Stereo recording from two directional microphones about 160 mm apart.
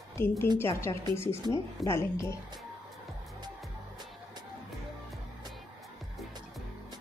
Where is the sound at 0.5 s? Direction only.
15° left (ahead or behind).